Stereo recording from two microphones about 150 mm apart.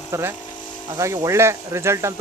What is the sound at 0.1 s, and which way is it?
Speech, 15° right (ahead or behind).